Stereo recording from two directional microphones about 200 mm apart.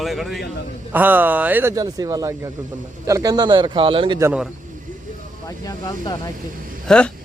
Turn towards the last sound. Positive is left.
turn(degrees=5)  # may be behind; listen again after turning